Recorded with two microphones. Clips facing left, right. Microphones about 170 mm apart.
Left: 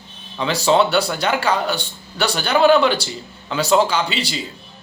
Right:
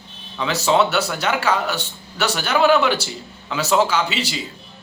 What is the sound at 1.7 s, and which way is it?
Speech, 30° left (ahead or behind).